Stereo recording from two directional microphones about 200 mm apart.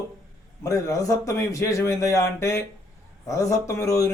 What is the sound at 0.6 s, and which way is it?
A man's voice, 15° left (ahead or behind).